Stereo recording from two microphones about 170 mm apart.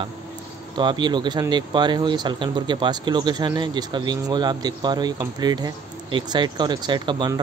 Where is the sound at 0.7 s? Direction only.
25° right (ahead or behind).